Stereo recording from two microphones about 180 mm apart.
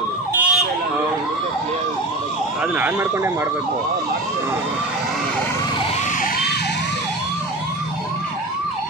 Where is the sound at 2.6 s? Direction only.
10° right (ahead or behind).